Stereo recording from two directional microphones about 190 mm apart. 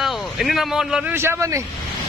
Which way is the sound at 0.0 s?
Centre (ahead or behind).